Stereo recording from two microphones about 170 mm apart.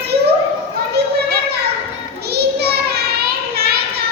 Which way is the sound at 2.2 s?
70° right (ahead or behind).